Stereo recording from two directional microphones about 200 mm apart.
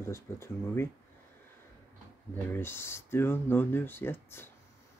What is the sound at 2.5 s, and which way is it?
Speech, 10° left (ahead or behind).